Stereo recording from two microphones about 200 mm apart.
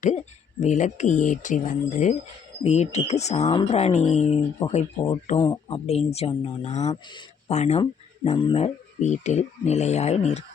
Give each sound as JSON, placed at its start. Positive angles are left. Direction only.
{"t": 0.6, "sound": "speech", "side_deg": 35}
{"t": 6.9, "sound": "speech", "side_deg": 25}
{"t": 7.5, "sound": "speech", "side_deg": 35}